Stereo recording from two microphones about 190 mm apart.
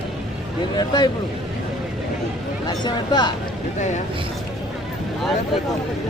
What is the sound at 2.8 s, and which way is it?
Speech, 20° left (ahead or behind).